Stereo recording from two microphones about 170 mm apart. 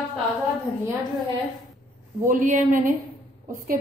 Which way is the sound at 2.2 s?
50° right (ahead or behind).